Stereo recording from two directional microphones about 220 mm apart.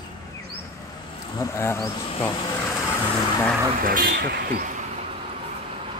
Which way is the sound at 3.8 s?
40° right (ahead or behind).